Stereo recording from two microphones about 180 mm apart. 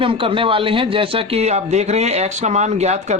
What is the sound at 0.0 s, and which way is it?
Speech, 30° right (ahead or behind).